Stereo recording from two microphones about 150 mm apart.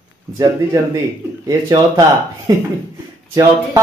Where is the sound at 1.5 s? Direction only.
25° right (ahead or behind).